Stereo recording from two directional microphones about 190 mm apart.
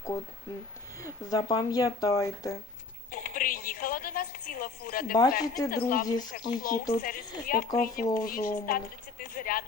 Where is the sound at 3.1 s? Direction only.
45° left (ahead or behind).